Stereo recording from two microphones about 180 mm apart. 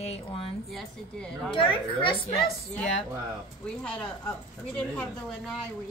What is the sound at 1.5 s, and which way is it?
Speech, 25° left (ahead or behind).